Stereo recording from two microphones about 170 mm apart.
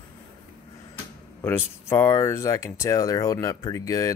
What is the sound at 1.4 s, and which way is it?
Speech, 15° left (ahead or behind).